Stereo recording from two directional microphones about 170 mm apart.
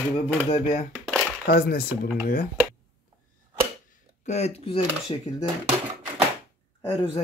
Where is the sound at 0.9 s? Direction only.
5° left (ahead or behind).